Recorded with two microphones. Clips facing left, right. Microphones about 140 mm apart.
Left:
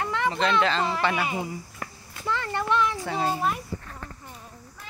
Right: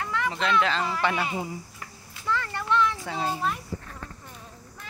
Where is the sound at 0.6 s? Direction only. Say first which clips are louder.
Left 1 dB; 5° right (ahead or behind).